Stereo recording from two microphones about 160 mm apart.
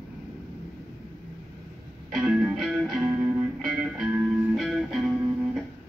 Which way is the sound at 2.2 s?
10° right (ahead or behind).